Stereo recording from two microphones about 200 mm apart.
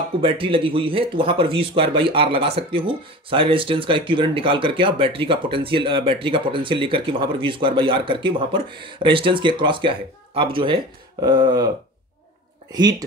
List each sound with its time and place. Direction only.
0.2 s a man's voice: 25° right (ahead or behind)